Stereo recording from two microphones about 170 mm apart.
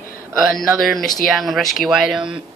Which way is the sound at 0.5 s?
Centre (ahead or behind).